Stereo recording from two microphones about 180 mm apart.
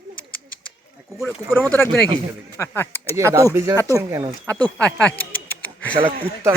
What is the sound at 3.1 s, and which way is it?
Speech, 15° right (ahead or behind).